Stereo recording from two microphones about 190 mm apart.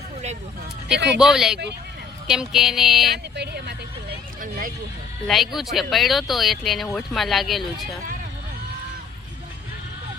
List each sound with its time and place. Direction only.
0.9 s speech: 60° right (ahead or behind)
1.2 s speech: 5° right (ahead or behind)
3.3 s speech: 60° right (ahead or behind)
4.4 s speech: 45° right (ahead or behind)
5.3 s speech: centre (ahead or behind)